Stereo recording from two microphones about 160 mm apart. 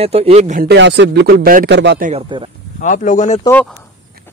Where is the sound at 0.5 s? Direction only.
90° right.